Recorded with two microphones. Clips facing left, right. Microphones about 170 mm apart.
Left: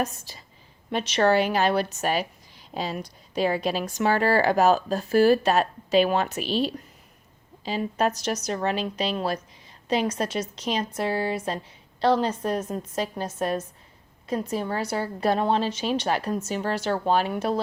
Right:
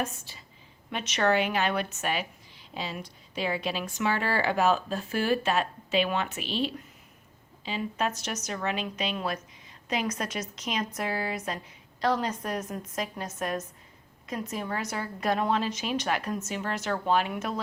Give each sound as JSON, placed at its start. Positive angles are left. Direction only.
{"t": 0.0, "sound": "a woman's voice", "side_deg": 40}